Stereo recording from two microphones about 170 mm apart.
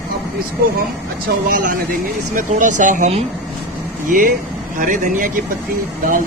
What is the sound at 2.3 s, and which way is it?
Speech, 50° right (ahead or behind).